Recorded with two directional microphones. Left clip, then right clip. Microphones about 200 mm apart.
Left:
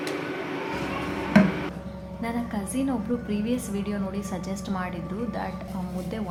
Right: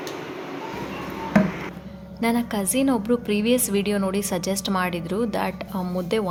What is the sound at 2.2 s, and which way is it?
A woman's voice, 60° right (ahead or behind).